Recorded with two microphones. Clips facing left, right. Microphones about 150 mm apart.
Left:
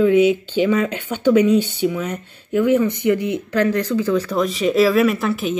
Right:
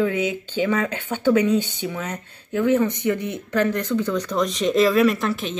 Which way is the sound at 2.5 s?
10° left (ahead or behind).